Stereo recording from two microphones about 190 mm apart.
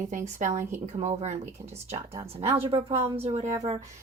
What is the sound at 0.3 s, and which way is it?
Speech, 40° right (ahead or behind).